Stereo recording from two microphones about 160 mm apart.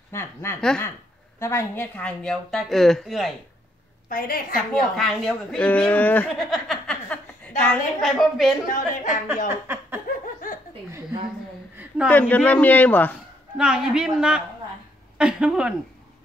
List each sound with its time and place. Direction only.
0.1 s speech: 15° left (ahead or behind)
0.6 s a woman's voice: 5° left (ahead or behind)
1.4 s a woman's voice: 15° left (ahead or behind); by 3.3 s centre (ahead or behind)
4.1 s a woman's voice: 65° left (ahead or behind)
4.9 s a woman's voice: centre (ahead or behind)
8.6 s a woman's voice: 55° left (ahead or behind)
9.5 s a sound: 15° right (ahead or behind)
11.7 s a sound: 10° right (ahead or behind)
12.1 s speech: 10° left (ahead or behind)
13.6 s a woman's voice: 5° right (ahead or behind)